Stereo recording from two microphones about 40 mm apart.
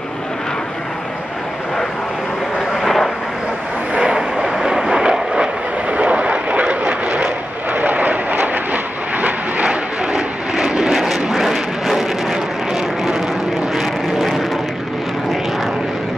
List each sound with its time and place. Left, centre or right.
2.7 s vehicle: centre
3.9 s vehicle: right
5.9 s vehicle: right
7.7 s vehicle: right
9.2 s vehicle: right; by 12.4 s centre
13.7 s vehicle: centre